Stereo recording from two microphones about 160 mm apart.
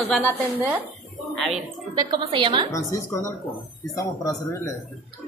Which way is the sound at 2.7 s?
20° left (ahead or behind).